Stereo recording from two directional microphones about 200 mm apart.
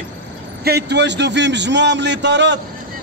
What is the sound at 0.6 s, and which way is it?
A man's voice, 55° right (ahead or behind).